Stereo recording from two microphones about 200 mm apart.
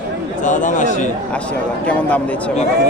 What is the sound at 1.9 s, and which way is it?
Speech, 5° left (ahead or behind).